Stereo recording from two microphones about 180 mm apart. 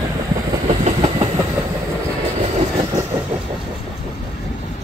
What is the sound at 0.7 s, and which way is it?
Train, 35° right (ahead or behind).